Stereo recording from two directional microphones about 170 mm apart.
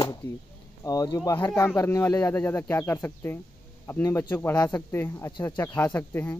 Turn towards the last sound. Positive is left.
turn(degrees=10)  # may be behind; listen again after turning